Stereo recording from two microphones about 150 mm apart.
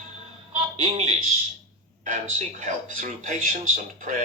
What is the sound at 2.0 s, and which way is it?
Speech, 60° right (ahead or behind).